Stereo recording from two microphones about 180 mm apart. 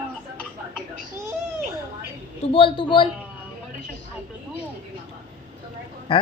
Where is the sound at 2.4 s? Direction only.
30° left (ahead or behind).